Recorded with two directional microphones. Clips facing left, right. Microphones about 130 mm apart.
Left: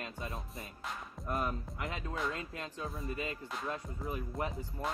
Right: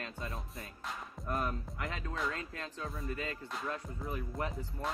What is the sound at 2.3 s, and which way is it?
Speech, 25° left (ahead or behind).